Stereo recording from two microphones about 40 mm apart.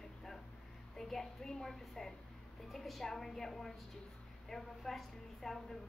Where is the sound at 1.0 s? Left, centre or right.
Centre.